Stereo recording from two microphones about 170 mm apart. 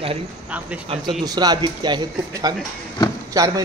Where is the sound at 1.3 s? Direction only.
25° right (ahead or behind).